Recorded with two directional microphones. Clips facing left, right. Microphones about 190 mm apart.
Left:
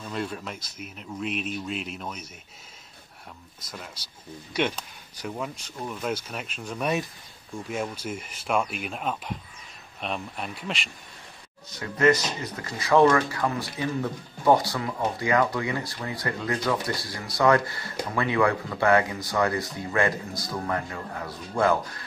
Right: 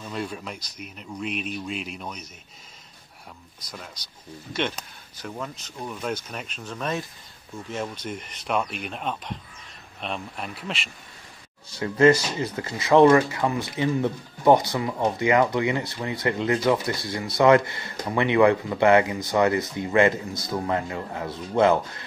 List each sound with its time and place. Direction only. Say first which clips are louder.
0.0 s a man's voice: even; centre (ahead or behind)
4.5 s a man's voice: left 1 dB; 10° left (ahead or behind)
11.7 s speech: right 4 dB; 30° right (ahead or behind)